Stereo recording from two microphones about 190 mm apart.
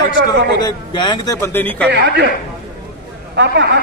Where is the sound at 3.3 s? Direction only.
65° right (ahead or behind).